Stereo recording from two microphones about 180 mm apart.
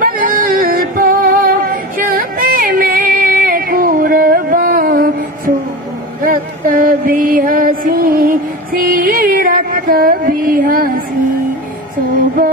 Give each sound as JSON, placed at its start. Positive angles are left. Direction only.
{"t": 0.0, "sound": "music", "side_deg": -50}
{"t": 6.3, "sound": "music", "side_deg": -50}